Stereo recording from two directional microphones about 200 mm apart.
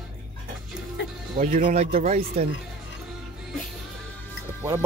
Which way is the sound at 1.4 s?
40° right (ahead or behind).